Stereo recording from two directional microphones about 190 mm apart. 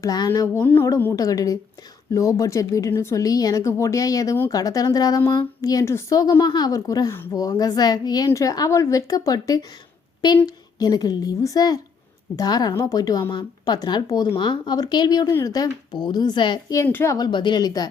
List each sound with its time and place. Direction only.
0.0 s a woman's voice: 20° left (ahead or behind)